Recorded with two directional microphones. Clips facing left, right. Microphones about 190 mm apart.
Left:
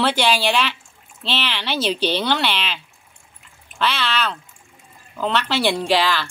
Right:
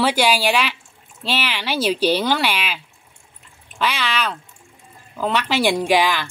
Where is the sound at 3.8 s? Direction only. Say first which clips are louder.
Even; 10° right (ahead or behind).